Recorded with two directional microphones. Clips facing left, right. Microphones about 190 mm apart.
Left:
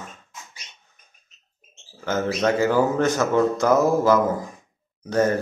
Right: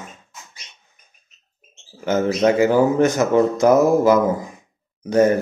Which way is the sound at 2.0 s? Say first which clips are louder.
Right 5 dB; 15° right (ahead or behind).